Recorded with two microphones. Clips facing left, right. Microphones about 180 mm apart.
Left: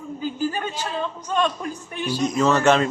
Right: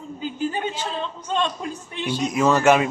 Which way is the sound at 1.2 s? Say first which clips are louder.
Left 1 dB; 25° right (ahead or behind).